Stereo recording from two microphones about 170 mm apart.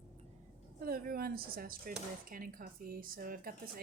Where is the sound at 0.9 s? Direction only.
60° right (ahead or behind).